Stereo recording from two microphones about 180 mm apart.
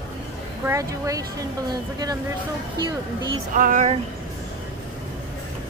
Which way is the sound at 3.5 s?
45° right (ahead or behind).